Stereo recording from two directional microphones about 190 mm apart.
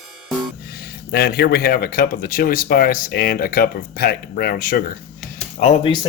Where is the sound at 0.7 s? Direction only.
55° left (ahead or behind).